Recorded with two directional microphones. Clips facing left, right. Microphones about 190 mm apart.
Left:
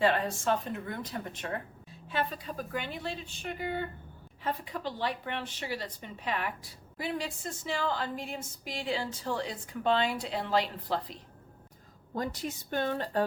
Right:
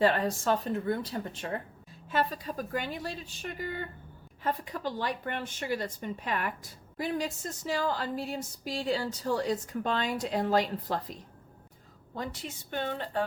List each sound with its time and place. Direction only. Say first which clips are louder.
0.0 s a woman's voice: right 1 dB; 40° right (ahead or behind)
2.0 s a woman's voice: right 3 dB; 45° right (ahead or behind)
12.1 s a woman's voice: left 3 dB; 40° left (ahead or behind)